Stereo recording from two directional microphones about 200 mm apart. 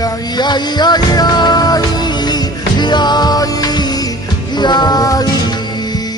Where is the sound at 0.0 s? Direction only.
20° left (ahead or behind).